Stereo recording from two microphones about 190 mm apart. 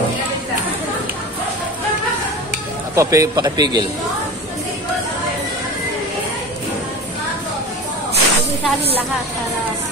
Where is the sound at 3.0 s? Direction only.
15° right (ahead or behind).